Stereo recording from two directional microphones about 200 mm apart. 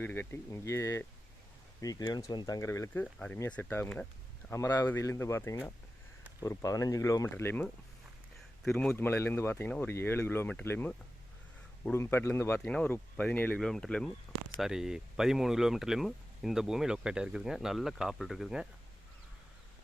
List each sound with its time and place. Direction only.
0.0 s speech: 10° left (ahead or behind)